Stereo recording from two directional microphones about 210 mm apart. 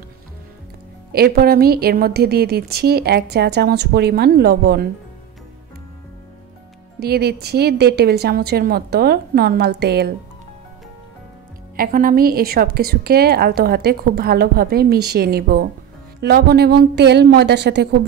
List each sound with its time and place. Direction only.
1.1 s a woman's voice: 45° right (ahead or behind)
7.0 s a woman's voice: 50° right (ahead or behind)
11.7 s a woman's voice: 45° right (ahead or behind)